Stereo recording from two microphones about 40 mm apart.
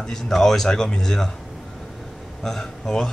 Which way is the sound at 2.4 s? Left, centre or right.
Centre.